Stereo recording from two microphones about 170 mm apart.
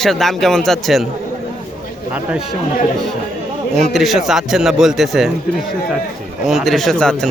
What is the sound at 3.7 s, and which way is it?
A man's voice, centre (ahead or behind).